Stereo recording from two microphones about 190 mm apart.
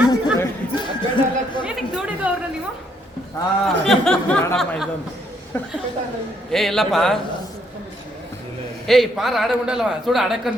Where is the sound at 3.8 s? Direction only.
Centre (ahead or behind).